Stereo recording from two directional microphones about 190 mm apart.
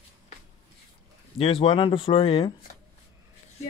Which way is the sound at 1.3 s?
30° left (ahead or behind).